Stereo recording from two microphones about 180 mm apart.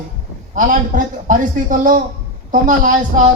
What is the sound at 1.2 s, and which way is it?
A man's voice, 45° right (ahead or behind).